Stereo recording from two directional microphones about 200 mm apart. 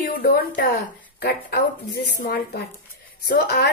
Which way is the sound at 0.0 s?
50° left (ahead or behind).